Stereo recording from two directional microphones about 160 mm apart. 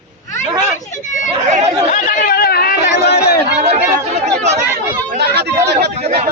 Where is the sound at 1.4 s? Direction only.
45° right (ahead or behind).